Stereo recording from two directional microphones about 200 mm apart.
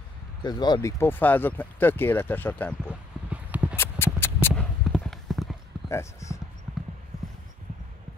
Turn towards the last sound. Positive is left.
turn(degrees=15)  # may be behind; listen again after turning